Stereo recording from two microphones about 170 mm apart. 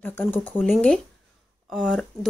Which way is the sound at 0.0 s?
10° left (ahead or behind).